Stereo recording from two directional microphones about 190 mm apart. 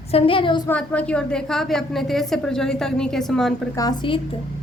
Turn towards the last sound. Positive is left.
turn(degrees=25)  # may be behind; listen again after turning